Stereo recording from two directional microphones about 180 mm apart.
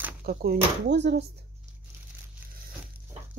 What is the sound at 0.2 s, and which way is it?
Speech, 55° right (ahead or behind).